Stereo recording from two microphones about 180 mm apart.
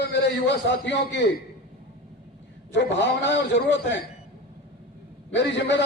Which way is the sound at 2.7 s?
80° left.